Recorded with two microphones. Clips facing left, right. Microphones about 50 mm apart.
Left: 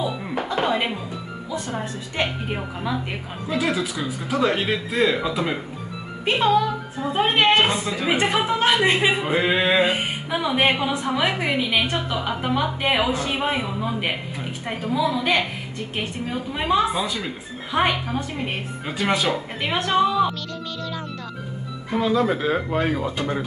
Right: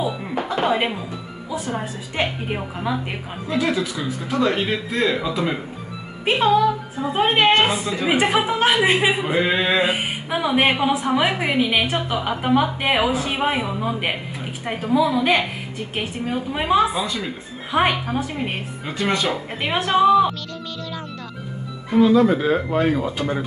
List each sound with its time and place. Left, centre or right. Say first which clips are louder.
0.0 s a sound: right 2 dB; centre
1.5 s a woman's voice: right 2 dB; centre
3.5 s a woman's voice: right 2 dB; centre
16.9 s speech: right 1 dB; centre
17.6 s a woman's voice: right 2 dB; centre
18.9 s speech: even; centre
19.3 s a woman's voice: right 1 dB; centre
21.9 s speech: right 6 dB; centre